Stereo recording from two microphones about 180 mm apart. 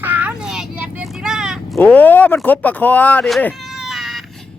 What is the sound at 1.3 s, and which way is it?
Vehicle, 5° right (ahead or behind).